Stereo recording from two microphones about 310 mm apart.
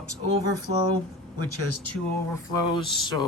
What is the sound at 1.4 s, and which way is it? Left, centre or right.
Speech, left.